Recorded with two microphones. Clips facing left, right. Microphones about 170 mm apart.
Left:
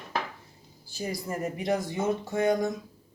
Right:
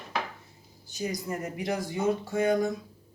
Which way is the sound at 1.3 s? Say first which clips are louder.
Left 7 dB; 25° left (ahead or behind).